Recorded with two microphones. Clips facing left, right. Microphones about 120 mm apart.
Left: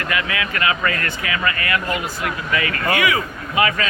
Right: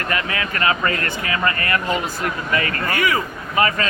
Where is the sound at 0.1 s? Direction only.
35° right (ahead or behind).